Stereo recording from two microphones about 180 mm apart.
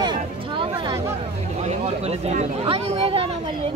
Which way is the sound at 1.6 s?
35° right (ahead or behind).